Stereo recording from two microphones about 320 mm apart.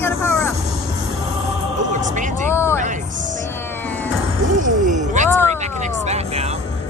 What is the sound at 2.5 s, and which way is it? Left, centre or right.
Vehicle, centre.